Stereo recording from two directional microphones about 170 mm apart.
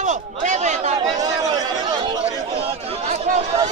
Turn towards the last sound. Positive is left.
turn(degrees=-40)  # may be behind; listen again after turning